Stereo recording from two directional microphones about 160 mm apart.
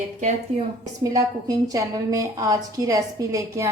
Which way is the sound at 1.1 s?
20° right (ahead or behind).